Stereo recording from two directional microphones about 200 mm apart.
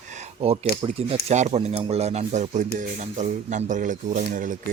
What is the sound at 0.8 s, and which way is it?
Speech, 30° right (ahead or behind).